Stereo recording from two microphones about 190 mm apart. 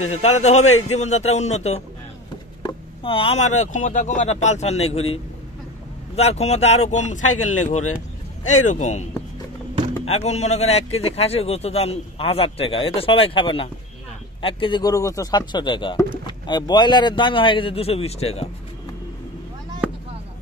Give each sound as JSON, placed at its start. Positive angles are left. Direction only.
{"t": 0.1, "sound": "speech", "side_deg": 35}
{"t": 10.0, "sound": "speech", "side_deg": 35}